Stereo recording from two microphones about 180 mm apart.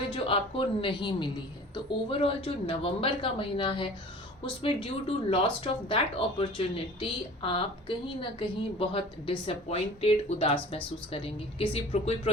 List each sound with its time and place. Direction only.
0.8 s a woman's voice: 25° left (ahead or behind)